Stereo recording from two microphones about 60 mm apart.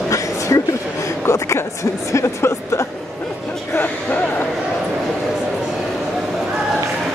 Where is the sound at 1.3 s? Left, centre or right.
Left.